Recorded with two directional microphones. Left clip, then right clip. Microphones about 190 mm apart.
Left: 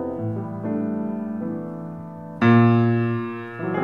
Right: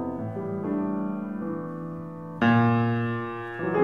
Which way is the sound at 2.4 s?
40° right (ahead or behind).